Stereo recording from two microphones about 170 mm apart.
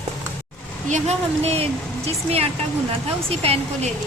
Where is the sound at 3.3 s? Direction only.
35° right (ahead or behind).